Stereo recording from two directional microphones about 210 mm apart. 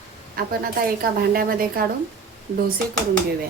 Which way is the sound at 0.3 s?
45° right (ahead or behind).